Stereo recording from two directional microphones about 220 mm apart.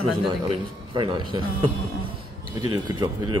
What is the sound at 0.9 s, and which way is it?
Speech, 20° right (ahead or behind).